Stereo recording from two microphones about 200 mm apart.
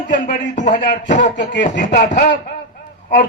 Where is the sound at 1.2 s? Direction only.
60° left (ahead or behind).